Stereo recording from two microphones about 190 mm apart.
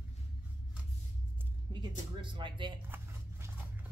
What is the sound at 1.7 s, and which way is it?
Speech, 25° right (ahead or behind).